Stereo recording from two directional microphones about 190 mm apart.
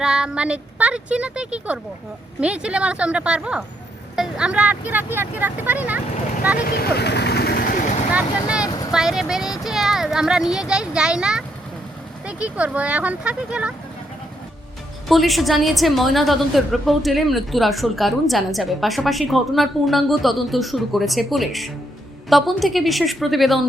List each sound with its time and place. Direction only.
0.0 s a woman's voice: 5° right (ahead or behind)
6.7 s vehicle: 55° left (ahead or behind)
8.1 s vehicle: 5° right (ahead or behind)
8.9 s speech: centre (ahead or behind)
15.0 s a woman's voice: centre (ahead or behind)